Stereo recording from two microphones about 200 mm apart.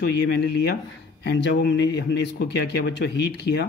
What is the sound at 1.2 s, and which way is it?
Speech, 55° left (ahead or behind).